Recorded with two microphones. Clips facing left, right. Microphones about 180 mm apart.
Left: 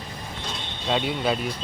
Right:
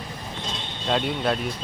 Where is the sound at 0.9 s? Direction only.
Centre (ahead or behind).